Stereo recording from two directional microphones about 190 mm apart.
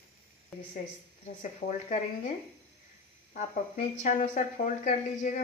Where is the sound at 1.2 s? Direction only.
35° left (ahead or behind).